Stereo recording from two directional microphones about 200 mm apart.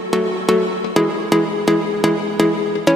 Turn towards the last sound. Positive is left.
turn(degrees=0)  # may be behind; listen again after turning